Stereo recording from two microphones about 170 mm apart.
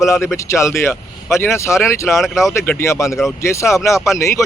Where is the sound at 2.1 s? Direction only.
Centre (ahead or behind).